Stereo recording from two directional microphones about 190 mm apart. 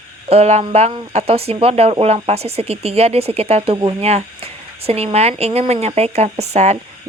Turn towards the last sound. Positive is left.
turn(degrees=-35)  # may be behind; listen again after turning